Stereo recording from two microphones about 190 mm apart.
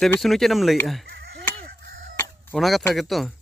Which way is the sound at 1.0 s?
55° right (ahead or behind).